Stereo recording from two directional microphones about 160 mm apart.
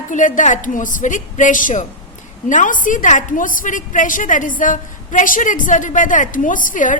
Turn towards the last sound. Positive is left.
turn(degrees=55)  # may be behind; listen again after turning